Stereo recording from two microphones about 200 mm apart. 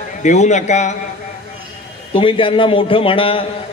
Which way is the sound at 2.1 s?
25° left (ahead or behind).